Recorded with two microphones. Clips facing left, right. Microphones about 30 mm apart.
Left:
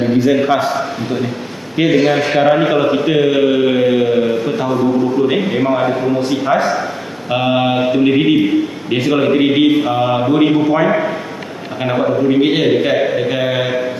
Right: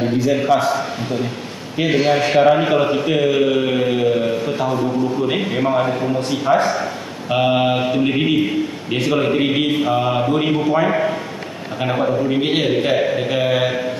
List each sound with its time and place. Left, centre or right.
0.0 s a man's voice: centre
4.7 s a man's voice: centre
5.2 s speech: centre